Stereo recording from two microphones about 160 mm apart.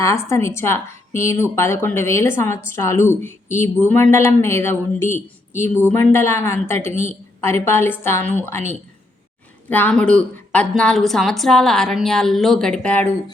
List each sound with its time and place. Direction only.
0.0 s speech: 15° left (ahead or behind)
9.6 s a woman's voice: 10° left (ahead or behind)